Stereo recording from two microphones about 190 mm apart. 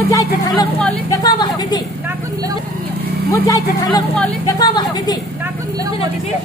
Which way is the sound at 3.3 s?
20° left (ahead or behind).